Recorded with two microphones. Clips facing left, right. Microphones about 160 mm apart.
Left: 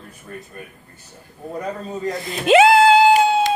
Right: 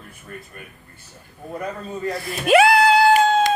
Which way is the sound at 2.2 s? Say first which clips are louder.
Left 2 dB; 25° left (ahead or behind).